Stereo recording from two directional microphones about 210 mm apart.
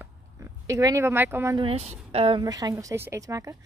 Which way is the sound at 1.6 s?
30° right (ahead or behind).